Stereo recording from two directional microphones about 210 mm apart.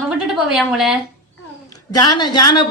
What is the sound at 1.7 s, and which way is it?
Speech, 20° left (ahead or behind).